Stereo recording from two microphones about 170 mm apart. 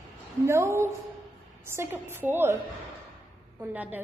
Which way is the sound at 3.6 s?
10° right (ahead or behind).